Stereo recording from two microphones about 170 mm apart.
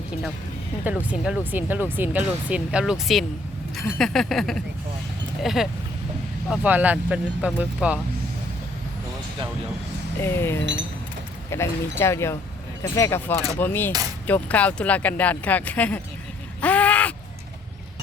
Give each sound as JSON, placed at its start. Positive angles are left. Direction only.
{"t": 0.9, "sound": "speech", "side_deg": -5}
{"t": 3.8, "sound": "a sound", "side_deg": 0}
{"t": 6.5, "sound": "speech", "side_deg": -10}
{"t": 10.2, "sound": "speech", "side_deg": 15}
{"t": 16.6, "sound": "crow", "side_deg": 10}